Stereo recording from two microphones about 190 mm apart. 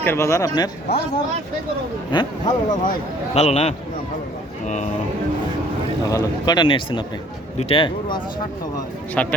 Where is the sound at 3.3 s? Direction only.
35° left (ahead or behind).